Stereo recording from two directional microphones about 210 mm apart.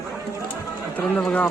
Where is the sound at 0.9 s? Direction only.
5° left (ahead or behind).